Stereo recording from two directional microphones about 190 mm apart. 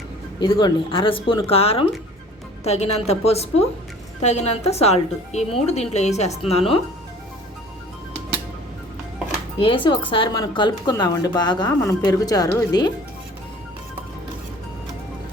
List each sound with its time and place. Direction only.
0.3 s a woman's voice: 25° left (ahead or behind)
9.6 s a woman's voice: 30° left (ahead or behind)